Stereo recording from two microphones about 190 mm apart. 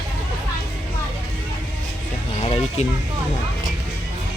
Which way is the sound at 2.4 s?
30° left (ahead or behind).